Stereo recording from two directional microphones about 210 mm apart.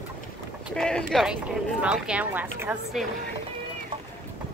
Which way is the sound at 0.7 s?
5° left (ahead or behind).